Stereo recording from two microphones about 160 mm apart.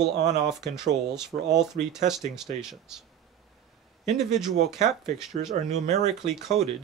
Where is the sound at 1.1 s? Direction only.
5° right (ahead or behind).